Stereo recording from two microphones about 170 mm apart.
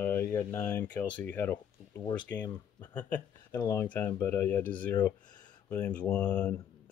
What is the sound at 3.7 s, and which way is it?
Speech, 10° left (ahead or behind).